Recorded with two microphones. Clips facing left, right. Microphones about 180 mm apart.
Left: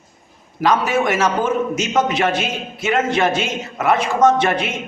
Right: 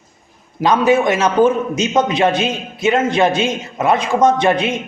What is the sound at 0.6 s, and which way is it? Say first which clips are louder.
A man's voice: right 4 dB; 20° right (ahead or behind).